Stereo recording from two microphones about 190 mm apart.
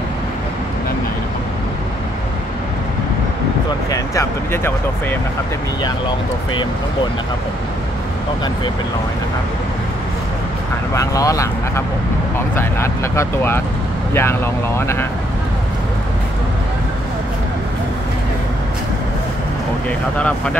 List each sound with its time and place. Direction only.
3.9 s speech: 15° left (ahead or behind)
5.9 s speech: 25° left (ahead or behind)
11.0 s speech: 15° left (ahead or behind)
20.2 s speech: 5° left (ahead or behind)